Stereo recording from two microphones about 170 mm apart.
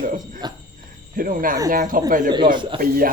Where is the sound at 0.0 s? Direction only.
55° right (ahead or behind).